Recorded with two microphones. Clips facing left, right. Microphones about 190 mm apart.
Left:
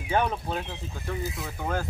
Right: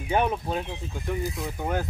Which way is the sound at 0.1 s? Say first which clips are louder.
Right 2 dB; 15° right (ahead or behind).